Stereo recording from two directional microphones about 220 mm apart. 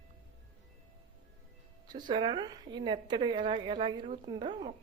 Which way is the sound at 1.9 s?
20° right (ahead or behind).